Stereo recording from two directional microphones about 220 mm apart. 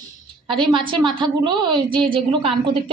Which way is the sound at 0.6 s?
20° right (ahead or behind).